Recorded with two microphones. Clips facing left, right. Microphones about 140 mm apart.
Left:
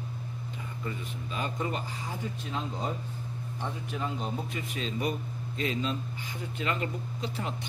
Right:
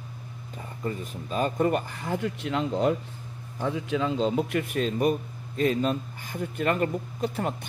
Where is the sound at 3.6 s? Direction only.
90° right.